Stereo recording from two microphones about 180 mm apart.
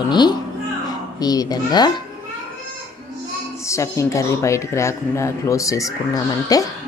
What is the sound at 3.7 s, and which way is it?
Speech, 15° left (ahead or behind).